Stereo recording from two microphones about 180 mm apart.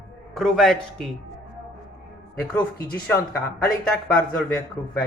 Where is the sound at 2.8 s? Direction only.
15° left (ahead or behind).